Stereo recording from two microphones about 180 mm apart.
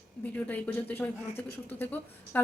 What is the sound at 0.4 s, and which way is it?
A woman's voice, 10° left (ahead or behind).